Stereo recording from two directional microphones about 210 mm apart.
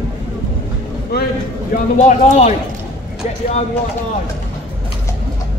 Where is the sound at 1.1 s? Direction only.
50° left (ahead or behind).